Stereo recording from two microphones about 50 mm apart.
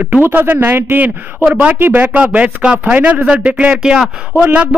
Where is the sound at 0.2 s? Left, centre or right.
Right.